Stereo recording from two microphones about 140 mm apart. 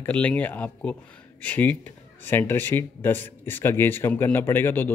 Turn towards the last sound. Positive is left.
turn(degrees=15)  # may be behind; listen again after turning